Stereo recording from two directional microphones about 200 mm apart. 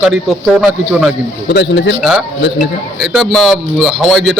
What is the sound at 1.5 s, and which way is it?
Speech, 60° left (ahead or behind).